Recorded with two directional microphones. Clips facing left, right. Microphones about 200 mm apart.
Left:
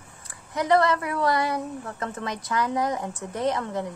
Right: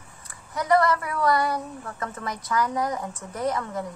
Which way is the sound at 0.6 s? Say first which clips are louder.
Even; 25° left (ahead or behind).